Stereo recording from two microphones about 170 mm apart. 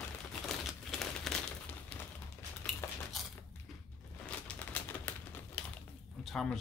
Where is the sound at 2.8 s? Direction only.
15° left (ahead or behind).